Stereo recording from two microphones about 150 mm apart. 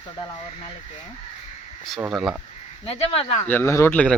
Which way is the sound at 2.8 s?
40° left (ahead or behind).